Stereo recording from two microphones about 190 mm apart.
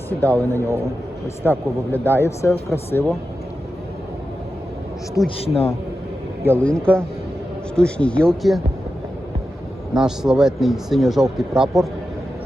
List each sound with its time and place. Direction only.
0.1 s a man's voice: 10° left (ahead or behind)
5.4 s a man's voice: 35° left (ahead or behind)
6.4 s a man's voice: 10° left (ahead or behind)
9.9 s speech: 5° right (ahead or behind)